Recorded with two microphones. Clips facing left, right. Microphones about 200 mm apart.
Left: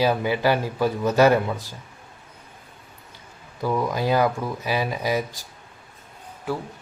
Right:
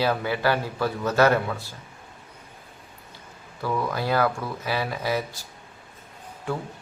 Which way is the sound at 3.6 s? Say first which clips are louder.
Left 3 dB; 15° left (ahead or behind).